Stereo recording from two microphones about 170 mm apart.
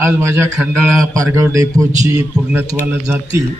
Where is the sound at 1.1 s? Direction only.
20° right (ahead or behind).